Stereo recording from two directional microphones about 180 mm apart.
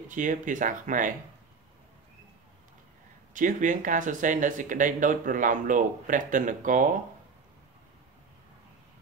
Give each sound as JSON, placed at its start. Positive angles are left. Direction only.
{"t": 0.1, "sound": "speech", "side_deg": -45}
{"t": 3.3, "sound": "speech", "side_deg": -45}